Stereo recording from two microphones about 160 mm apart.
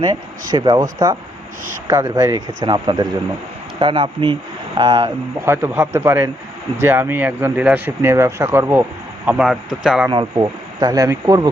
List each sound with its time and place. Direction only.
0.5 s speech: 25° right (ahead or behind)
5.5 s speech: 15° right (ahead or behind)
10.1 s speech: 25° right (ahead or behind)